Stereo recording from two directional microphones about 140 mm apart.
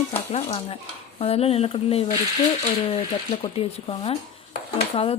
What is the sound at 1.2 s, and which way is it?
Speech, 45° left (ahead or behind).